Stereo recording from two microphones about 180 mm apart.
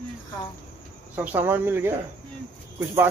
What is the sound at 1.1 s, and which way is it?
Speech, 10° right (ahead or behind).